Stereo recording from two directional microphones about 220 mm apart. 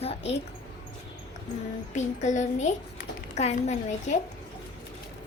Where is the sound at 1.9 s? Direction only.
35° left (ahead or behind).